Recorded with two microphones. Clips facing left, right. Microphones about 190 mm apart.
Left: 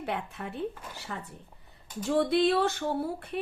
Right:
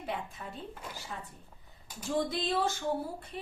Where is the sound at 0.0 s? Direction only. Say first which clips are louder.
Left 4 dB; 65° left (ahead or behind).